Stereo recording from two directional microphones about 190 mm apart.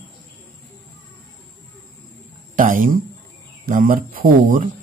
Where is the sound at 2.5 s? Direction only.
45° right (ahead or behind).